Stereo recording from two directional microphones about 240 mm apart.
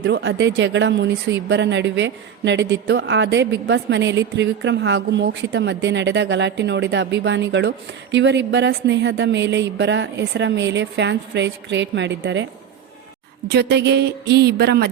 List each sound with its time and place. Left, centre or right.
0.0 s speech: right
13.5 s speech: right